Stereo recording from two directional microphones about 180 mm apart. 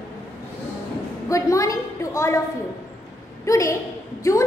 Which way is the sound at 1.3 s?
15° left (ahead or behind).